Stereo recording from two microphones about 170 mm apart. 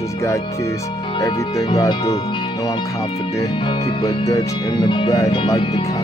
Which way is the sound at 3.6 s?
30° left (ahead or behind).